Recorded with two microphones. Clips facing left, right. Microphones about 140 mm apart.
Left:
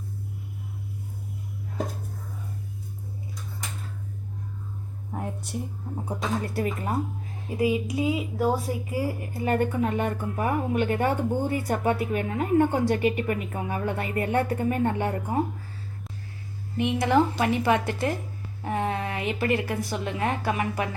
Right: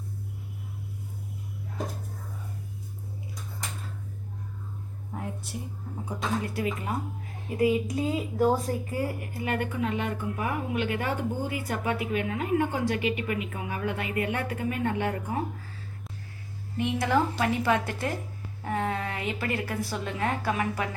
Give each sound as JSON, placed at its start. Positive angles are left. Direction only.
{"t": 6.4, "sound": "speech", "side_deg": 40}
{"t": 7.5, "sound": "a woman's voice", "side_deg": 20}
{"t": 7.9, "sound": "speech", "side_deg": 10}
{"t": 9.2, "sound": "speech", "side_deg": 30}
{"t": 16.7, "sound": "a woman's voice", "side_deg": 20}